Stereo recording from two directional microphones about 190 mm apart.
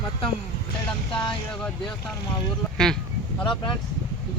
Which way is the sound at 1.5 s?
5° left (ahead or behind).